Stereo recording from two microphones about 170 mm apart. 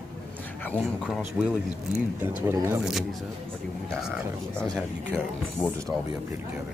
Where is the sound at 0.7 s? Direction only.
Centre (ahead or behind).